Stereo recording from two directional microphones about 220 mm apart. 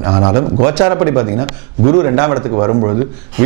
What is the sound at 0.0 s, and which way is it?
Speech, 25° right (ahead or behind).